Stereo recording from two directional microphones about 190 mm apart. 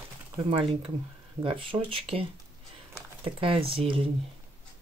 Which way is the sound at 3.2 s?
30° right (ahead or behind).